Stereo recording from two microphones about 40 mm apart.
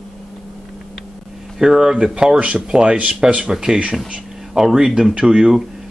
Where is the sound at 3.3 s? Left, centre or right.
Centre.